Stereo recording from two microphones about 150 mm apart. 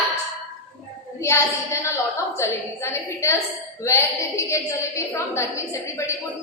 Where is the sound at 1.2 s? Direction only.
20° left (ahead or behind).